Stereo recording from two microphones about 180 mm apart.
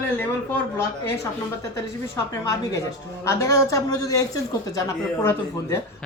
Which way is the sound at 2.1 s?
20° left (ahead or behind).